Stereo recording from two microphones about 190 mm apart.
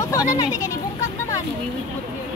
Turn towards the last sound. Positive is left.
turn(degrees=20)  # may be behind; listen again after turning